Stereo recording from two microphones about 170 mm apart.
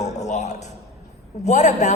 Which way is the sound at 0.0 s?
45° left (ahead or behind).